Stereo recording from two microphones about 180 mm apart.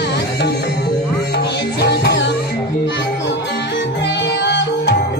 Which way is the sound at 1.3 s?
70° left (ahead or behind).